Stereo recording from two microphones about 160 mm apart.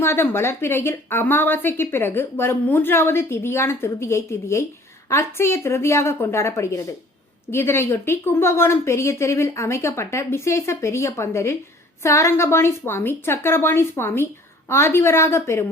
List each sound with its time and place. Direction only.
0.0 s speech: 15° left (ahead or behind)